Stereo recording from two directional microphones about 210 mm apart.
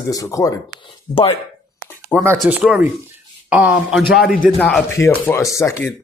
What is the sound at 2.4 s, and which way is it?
Speech, 5° right (ahead or behind).